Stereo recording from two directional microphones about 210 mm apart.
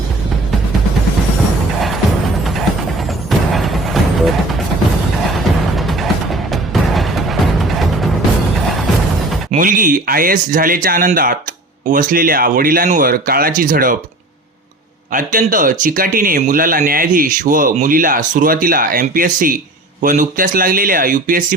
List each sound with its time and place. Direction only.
3.2 s music: centre (ahead or behind)
5.7 s music: centre (ahead or behind)
9.5 s speech: 40° right (ahead or behind)
15.1 s speech: 40° right (ahead or behind)